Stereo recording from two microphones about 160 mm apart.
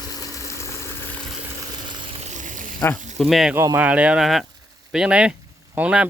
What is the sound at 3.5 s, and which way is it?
Speech, 10° right (ahead or behind).